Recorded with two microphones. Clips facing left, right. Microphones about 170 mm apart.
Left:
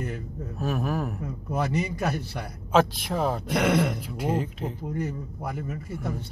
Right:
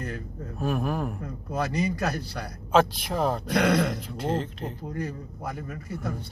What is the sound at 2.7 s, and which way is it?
Speech, centre (ahead or behind).